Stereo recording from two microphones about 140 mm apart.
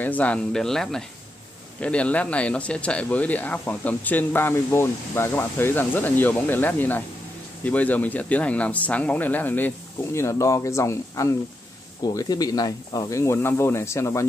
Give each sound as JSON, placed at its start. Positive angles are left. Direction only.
{"t": 0.0, "sound": "speech", "side_deg": 10}